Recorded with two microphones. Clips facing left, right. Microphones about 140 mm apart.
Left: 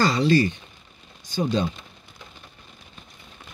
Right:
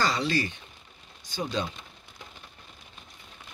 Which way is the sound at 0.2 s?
35° left (ahead or behind).